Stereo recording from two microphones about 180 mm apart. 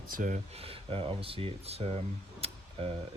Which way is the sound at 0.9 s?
30° right (ahead or behind).